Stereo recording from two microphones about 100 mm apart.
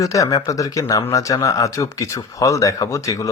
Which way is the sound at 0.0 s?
35° left (ahead or behind).